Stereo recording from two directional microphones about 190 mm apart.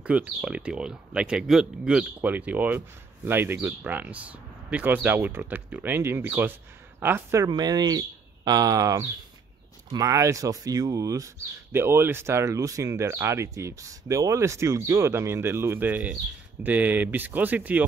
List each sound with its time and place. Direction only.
0.0 s speech: 5° right (ahead or behind)